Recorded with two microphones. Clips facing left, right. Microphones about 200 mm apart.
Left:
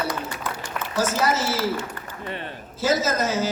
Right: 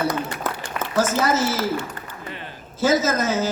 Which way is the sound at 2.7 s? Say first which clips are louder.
Right 3 dB; 50° right (ahead or behind).